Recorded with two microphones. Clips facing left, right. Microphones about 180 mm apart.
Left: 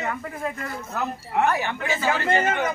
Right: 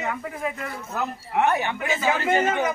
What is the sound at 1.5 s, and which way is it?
A man's voice, 15° right (ahead or behind).